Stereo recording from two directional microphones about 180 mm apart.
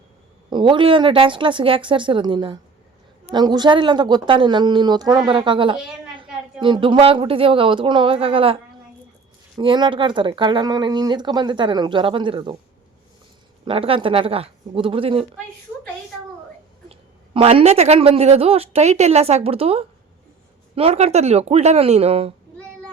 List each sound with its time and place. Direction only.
0.5 s speech: 25° right (ahead or behind)
9.6 s speech: 25° right (ahead or behind)
13.7 s speech: 30° right (ahead or behind)
16.9 s speech: 30° right (ahead or behind)